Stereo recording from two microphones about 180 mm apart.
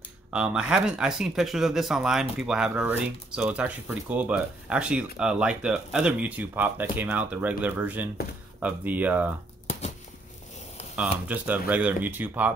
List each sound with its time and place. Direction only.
0.3 s speech: 5° right (ahead or behind)
9.7 s a sound: 40° left (ahead or behind)
11.2 s speech: 10° right (ahead or behind)